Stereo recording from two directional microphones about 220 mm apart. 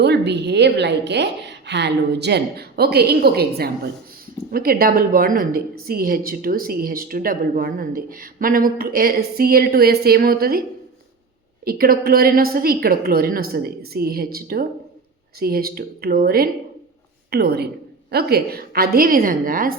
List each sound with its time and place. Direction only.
0.0 s a woman's voice: 50° right (ahead or behind)
11.6 s a woman's voice: 45° right (ahead or behind)